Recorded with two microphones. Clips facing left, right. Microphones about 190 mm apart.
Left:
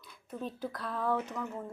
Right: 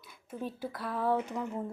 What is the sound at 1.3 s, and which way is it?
Speech, 15° right (ahead or behind).